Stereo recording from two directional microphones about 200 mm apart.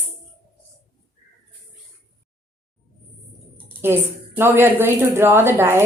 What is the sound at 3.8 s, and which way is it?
A woman's voice, 10° right (ahead or behind).